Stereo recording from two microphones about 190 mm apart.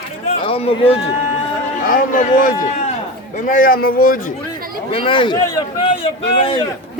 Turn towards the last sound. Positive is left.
turn(degrees=30)  # may be behind; listen again after turning